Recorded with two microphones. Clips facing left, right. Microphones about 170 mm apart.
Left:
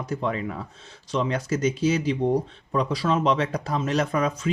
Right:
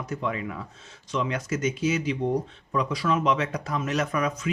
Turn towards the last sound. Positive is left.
turn(degrees=30)  # may be behind; listen again after turning